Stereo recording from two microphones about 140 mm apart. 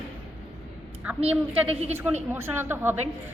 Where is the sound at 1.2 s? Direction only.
45° right (ahead or behind).